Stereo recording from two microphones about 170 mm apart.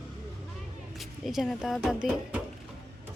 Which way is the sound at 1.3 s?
Centre (ahead or behind).